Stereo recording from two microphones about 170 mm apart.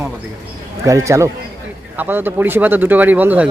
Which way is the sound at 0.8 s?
20° right (ahead or behind).